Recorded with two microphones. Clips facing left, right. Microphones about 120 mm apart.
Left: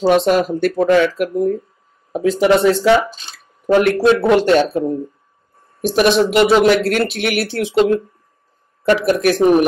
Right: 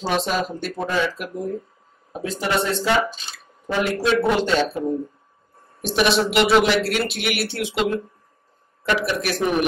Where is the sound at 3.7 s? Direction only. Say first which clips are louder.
Left 8 dB; 60° left (ahead or behind).